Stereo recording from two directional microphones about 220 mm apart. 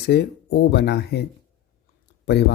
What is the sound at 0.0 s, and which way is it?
Speech, 45° left (ahead or behind).